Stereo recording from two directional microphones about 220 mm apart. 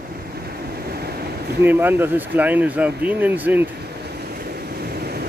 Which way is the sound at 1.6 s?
10° right (ahead or behind).